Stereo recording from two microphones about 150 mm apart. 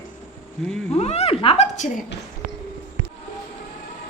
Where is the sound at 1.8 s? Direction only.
55° left (ahead or behind).